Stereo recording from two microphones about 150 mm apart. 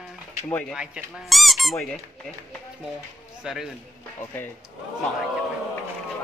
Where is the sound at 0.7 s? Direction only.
Centre (ahead or behind).